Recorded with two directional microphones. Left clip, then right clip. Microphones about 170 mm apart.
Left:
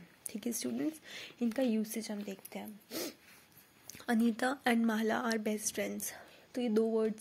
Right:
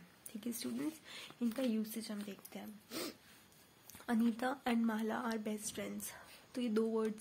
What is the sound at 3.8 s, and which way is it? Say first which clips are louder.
Speech: left 4 dB; 30° left (ahead or behind).